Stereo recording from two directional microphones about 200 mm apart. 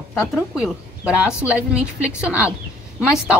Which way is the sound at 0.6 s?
5° right (ahead or behind).